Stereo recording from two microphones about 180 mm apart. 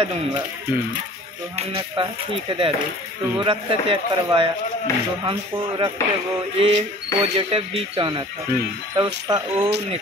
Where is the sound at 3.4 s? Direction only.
25° right (ahead or behind).